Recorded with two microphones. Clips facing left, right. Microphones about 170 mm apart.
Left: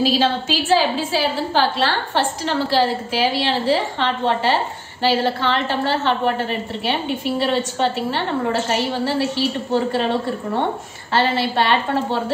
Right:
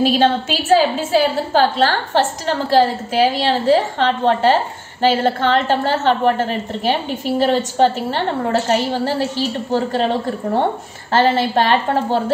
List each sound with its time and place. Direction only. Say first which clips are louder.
0.7 s a woman's voice: right 7 dB; 45° right (ahead or behind)